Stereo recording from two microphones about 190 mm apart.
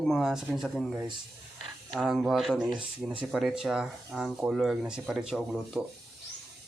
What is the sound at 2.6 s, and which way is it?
Speech, 20° right (ahead or behind).